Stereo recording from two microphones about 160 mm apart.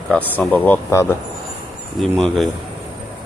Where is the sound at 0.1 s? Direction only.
10° left (ahead or behind).